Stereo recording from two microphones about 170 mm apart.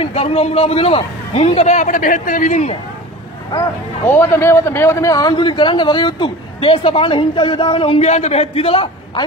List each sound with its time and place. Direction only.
0.0 s a man's voice: 35° left (ahead or behind)
4.0 s a man's voice: 15° left (ahead or behind); by 9.2 s 35° left (ahead or behind)